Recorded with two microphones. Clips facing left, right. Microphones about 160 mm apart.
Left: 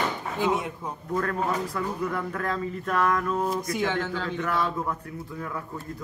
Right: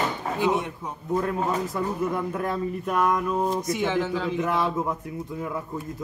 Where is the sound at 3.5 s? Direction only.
Centre (ahead or behind).